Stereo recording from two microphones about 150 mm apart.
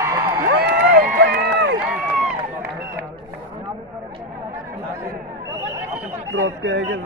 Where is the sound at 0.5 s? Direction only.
90° right.